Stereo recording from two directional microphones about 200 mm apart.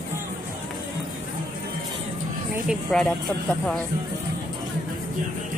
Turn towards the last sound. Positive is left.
turn(degrees=5)  # may be behind; listen again after turning